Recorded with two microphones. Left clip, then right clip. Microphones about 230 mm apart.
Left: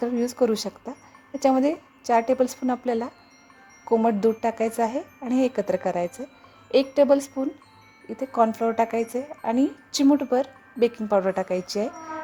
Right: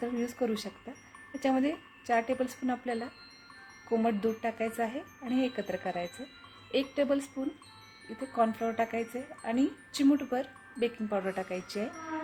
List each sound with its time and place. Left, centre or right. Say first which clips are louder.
0.0 s speech: left 10 dB; left